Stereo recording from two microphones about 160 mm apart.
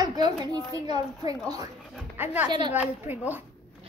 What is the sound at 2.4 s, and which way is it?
Speech, 30° right (ahead or behind).